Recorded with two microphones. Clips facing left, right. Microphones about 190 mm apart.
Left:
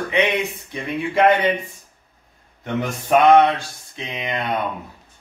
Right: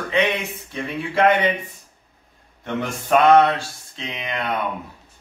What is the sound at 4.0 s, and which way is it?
Speech, 15° left (ahead or behind).